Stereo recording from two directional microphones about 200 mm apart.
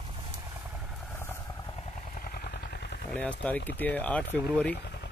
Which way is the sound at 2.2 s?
50° left (ahead or behind).